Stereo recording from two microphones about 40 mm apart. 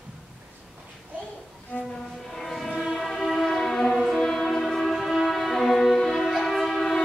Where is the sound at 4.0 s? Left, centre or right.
Centre.